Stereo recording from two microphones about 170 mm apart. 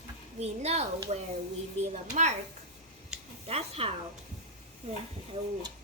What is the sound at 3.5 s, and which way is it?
Speech, 35° right (ahead or behind).